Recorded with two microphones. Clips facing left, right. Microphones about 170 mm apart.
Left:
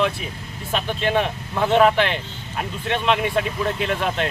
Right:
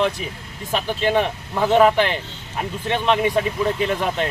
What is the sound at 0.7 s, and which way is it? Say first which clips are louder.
Speech: right 2 dB; 15° right (ahead or behind).